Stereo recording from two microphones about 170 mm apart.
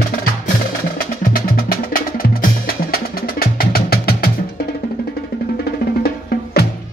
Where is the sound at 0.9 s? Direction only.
55° left (ahead or behind).